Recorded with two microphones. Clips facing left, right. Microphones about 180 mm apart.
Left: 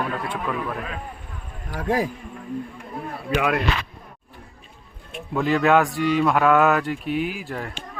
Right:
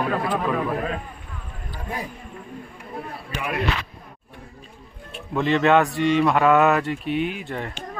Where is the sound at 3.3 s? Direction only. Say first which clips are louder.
Left 8 dB; 90° left.